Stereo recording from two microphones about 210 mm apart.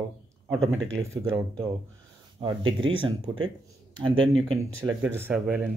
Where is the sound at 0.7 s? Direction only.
65° right (ahead or behind).